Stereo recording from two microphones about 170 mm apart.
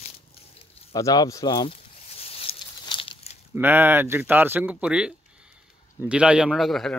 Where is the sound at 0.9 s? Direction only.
20° left (ahead or behind).